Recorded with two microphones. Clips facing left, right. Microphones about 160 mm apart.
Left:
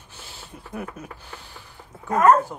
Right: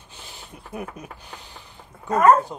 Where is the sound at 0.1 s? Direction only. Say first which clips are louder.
Even; 15° right (ahead or behind).